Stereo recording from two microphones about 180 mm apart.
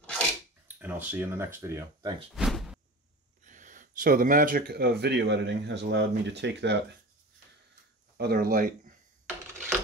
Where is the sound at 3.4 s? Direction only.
45° right (ahead or behind); by 6.7 s 75° right (ahead or behind).